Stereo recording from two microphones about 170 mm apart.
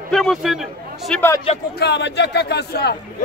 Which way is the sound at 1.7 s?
85° left.